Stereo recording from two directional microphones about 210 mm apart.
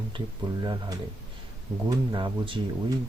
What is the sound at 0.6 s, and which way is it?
Speech, 20° right (ahead or behind).